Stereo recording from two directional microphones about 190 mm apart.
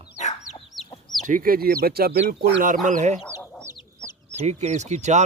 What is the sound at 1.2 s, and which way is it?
Speech, 45° right (ahead or behind).